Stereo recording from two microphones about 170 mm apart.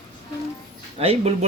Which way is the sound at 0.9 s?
35° right (ahead or behind).